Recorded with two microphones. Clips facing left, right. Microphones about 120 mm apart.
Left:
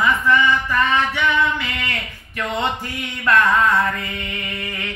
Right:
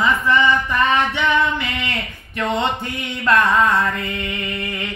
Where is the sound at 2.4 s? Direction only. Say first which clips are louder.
Right 2 dB; 25° right (ahead or behind).